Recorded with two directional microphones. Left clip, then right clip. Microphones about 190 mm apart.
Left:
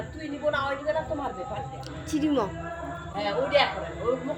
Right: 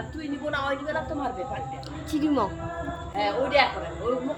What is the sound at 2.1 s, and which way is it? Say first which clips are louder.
Speech: right 1 dB; 5° left (ahead or behind).